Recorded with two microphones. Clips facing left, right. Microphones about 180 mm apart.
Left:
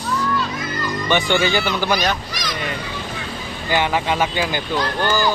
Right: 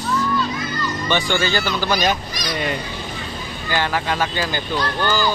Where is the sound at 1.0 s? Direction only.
15° left (ahead or behind).